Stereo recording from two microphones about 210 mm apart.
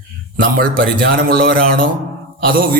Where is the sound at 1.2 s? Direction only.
45° right (ahead or behind).